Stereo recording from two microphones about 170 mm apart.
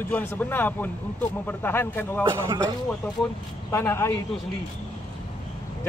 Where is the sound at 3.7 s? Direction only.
15° left (ahead or behind).